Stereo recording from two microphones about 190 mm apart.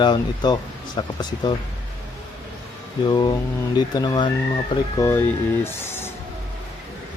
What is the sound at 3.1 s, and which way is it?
Speech, 25° left (ahead or behind).